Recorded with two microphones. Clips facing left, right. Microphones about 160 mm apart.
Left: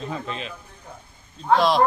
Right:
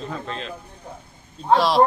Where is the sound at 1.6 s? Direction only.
Centre (ahead or behind).